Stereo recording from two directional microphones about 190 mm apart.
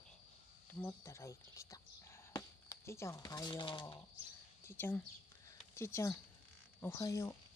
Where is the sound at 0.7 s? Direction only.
10° left (ahead or behind).